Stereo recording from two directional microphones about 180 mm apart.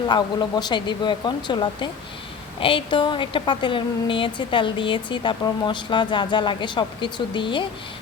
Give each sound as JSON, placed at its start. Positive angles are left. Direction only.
{"t": 0.1, "sound": "a woman's voice", "side_deg": 25}